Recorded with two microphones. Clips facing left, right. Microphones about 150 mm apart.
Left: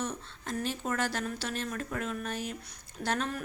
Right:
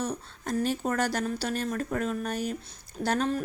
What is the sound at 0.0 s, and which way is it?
A woman's voice, 40° right (ahead or behind).